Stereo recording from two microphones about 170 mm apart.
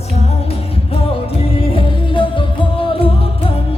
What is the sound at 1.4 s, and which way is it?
Music, 35° left (ahead or behind).